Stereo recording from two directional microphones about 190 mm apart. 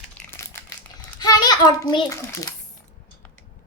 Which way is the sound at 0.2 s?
10° left (ahead or behind).